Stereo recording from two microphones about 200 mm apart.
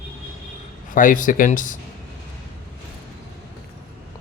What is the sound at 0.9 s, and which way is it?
Speech, 40° left (ahead or behind).